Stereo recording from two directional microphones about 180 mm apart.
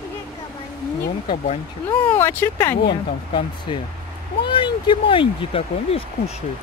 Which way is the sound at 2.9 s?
30° left (ahead or behind).